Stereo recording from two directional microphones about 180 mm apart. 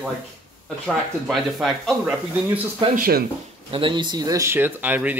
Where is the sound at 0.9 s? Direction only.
Centre (ahead or behind).